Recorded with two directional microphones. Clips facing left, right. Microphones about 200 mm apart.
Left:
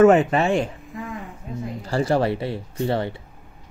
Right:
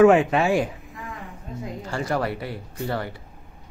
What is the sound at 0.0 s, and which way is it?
Speech, centre (ahead or behind).